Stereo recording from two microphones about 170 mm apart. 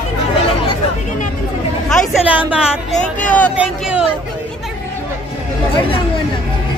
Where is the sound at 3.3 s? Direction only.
5° left (ahead or behind).